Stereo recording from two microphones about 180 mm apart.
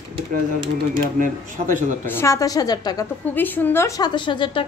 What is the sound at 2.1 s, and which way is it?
Speech, 15° left (ahead or behind).